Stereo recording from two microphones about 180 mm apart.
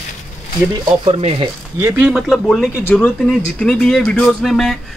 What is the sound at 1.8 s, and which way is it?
Speech, 10° right (ahead or behind).